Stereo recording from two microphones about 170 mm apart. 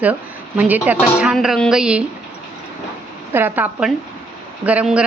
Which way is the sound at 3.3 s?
10° right (ahead or behind).